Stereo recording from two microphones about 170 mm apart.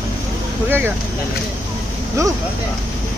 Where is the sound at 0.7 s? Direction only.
15° right (ahead or behind).